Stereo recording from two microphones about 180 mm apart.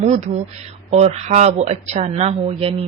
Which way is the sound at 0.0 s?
35° right (ahead or behind).